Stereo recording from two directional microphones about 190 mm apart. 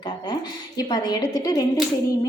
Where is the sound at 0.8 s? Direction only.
20° left (ahead or behind).